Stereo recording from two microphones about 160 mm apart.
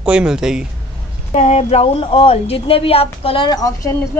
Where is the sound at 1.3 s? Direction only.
40° left (ahead or behind).